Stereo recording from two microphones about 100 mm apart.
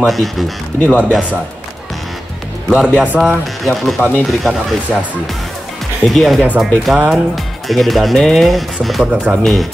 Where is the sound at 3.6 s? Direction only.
Centre (ahead or behind).